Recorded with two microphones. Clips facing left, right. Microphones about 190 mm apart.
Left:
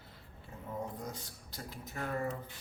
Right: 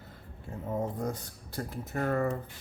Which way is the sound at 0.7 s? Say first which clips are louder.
Right 8 dB; 50° right (ahead or behind).